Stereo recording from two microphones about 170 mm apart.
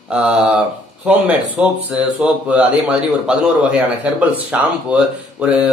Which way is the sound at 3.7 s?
5° right (ahead or behind).